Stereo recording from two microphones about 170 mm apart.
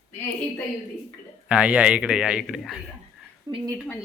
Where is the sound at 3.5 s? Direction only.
20° right (ahead or behind).